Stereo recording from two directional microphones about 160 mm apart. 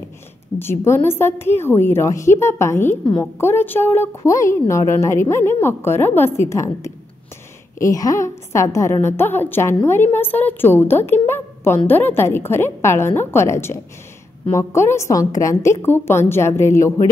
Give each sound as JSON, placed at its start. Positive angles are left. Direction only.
{"t": 0.6, "sound": "a woman's voice", "side_deg": 15}